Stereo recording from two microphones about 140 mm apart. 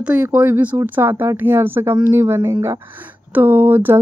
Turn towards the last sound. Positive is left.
turn(degrees=-15)  # may be behind; listen again after turning